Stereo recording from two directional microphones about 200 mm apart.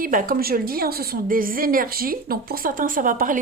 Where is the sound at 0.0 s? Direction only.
45° right (ahead or behind).